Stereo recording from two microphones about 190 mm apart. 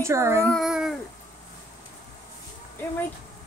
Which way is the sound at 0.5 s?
Centre (ahead or behind).